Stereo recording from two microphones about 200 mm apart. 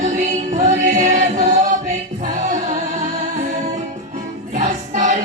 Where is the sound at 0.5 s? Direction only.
35° right (ahead or behind).